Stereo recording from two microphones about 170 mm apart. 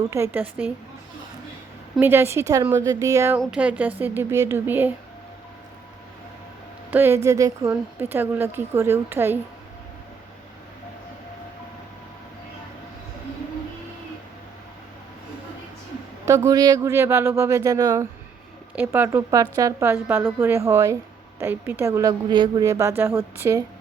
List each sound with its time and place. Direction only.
0.1 s a woman's voice: 15° right (ahead or behind)
2.0 s a woman's voice: 15° right (ahead or behind)
6.9 s a woman's voice: 15° right (ahead or behind)
16.5 s a woman's voice: 20° right (ahead or behind)